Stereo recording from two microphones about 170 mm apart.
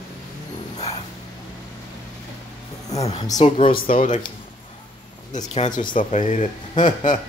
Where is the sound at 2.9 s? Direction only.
40° left (ahead or behind).